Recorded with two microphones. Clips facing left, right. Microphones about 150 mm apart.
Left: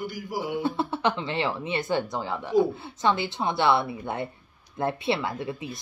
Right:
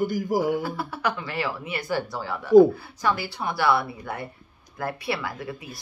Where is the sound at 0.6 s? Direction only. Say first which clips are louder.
Left 3 dB; 25° left (ahead or behind).